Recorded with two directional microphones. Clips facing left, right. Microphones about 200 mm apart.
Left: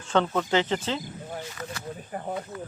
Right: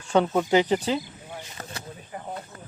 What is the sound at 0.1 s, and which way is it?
Speech, 15° right (ahead or behind).